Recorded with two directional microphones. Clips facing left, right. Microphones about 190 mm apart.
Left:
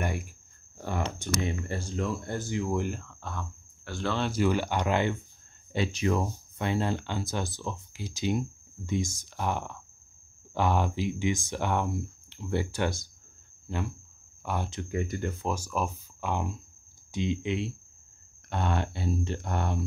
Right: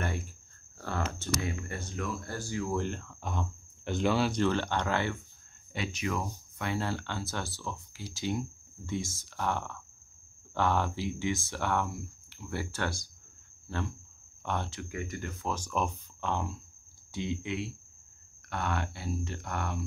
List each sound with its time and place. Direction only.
0.0 s wild animals: 10° left (ahead or behind)
0.7 s a sound: 15° left (ahead or behind)
1.1 s speech: 20° left (ahead or behind)
3.1 s speech: 15° right (ahead or behind)
4.3 s speech: 10° left (ahead or behind)
5.7 s speech: 30° left (ahead or behind); by 14.7 s 10° left (ahead or behind)
14.7 s speech: 25° left (ahead or behind)
15.4 s speech: 10° left (ahead or behind); by 19.8 s 25° left (ahead or behind)